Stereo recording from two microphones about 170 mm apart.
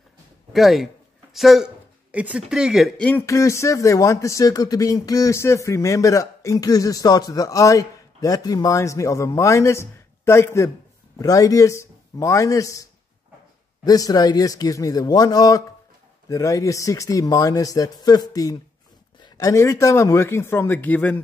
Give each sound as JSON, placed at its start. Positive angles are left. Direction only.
{"t": 0.5, "sound": "a man's voice", "side_deg": 0}
{"t": 3.1, "sound": "speech", "side_deg": 15}
{"t": 13.8, "sound": "speech", "side_deg": 20}